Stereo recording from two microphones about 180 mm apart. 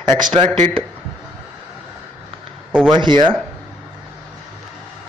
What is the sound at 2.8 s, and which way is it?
Speech, 25° right (ahead or behind).